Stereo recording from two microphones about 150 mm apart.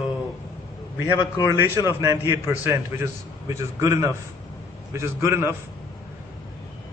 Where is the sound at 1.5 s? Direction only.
15° right (ahead or behind).